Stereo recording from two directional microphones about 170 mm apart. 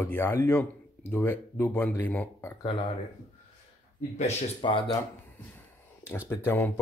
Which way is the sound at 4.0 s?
40° left (ahead or behind).